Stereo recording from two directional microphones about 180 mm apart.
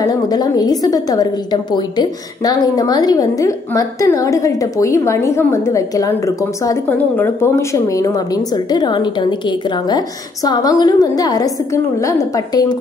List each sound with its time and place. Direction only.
0.0 s a woman's voice: 20° left (ahead or behind)